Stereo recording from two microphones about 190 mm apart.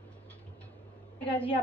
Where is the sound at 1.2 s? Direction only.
5° left (ahead or behind).